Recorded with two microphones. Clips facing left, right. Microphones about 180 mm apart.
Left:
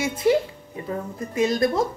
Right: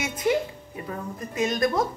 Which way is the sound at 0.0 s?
30° left (ahead or behind).